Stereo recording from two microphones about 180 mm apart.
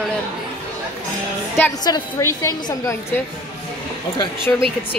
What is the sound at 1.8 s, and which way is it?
A woman's voice, 20° left (ahead or behind).